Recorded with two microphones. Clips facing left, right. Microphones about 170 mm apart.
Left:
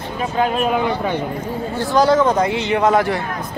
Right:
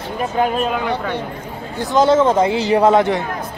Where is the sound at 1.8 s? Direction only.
20° right (ahead or behind).